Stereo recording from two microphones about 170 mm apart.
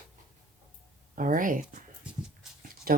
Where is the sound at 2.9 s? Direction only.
60° right (ahead or behind).